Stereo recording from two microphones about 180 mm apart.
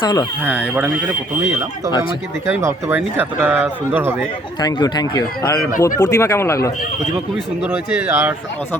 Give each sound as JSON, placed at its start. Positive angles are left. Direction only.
{"t": 0.0, "sound": "speech", "side_deg": 20}
{"t": 0.4, "sound": "speech", "side_deg": -5}
{"t": 2.5, "sound": "speech", "side_deg": -15}
{"t": 4.6, "sound": "speech", "side_deg": 20}
{"t": 7.6, "sound": "speech", "side_deg": -10}